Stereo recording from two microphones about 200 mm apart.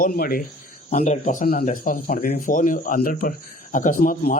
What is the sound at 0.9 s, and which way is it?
Speech, 35° left (ahead or behind).